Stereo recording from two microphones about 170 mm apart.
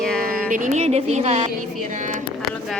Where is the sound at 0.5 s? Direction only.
45° right (ahead or behind).